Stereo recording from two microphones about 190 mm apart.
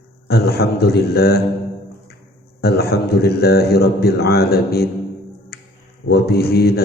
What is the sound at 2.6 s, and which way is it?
A man's voice, 55° left (ahead or behind).